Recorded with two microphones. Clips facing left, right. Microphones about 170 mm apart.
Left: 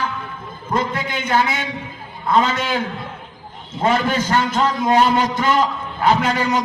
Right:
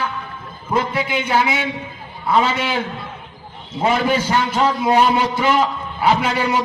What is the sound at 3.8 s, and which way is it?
A man's voice, 10° right (ahead or behind).